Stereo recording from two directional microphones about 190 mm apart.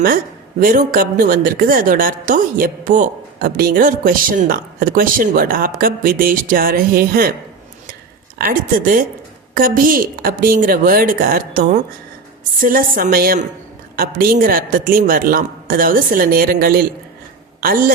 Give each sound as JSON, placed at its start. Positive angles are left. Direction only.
{"t": 0.6, "sound": "a woman's voice", "side_deg": -45}
{"t": 8.4, "sound": "a woman's voice", "side_deg": -50}